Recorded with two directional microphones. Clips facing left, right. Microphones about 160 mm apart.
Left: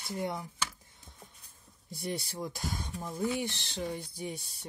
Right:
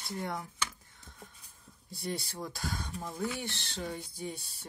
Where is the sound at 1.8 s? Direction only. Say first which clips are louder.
Left 1 dB; 20° left (ahead or behind).